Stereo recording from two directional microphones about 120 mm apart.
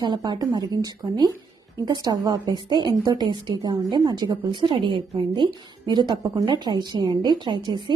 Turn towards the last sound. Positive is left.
turn(degrees=-40)  # may be behind; listen again after turning